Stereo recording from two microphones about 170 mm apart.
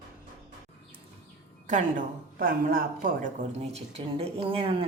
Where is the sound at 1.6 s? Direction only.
45° right (ahead or behind); by 4.9 s 30° right (ahead or behind).